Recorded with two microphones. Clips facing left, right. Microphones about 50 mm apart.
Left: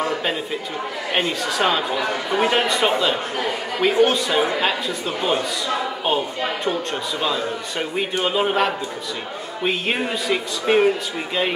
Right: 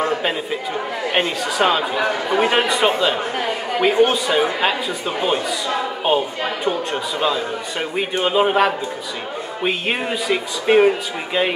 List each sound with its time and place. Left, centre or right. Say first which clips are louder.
1.1 s speech: right 1 dB; centre
2.0 s speech: right 3 dB; right
3.3 s a woman's voice: right 2 dB; centre
4.1 s a man's voice: right 1 dB; centre